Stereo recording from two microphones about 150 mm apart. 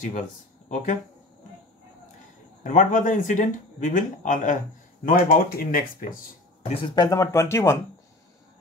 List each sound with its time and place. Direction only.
0.0 s speech: 60° left (ahead or behind)
2.6 s speech: 60° left (ahead or behind)
5.0 s speech: 70° left (ahead or behind)
7.1 s speech: 20° left (ahead or behind)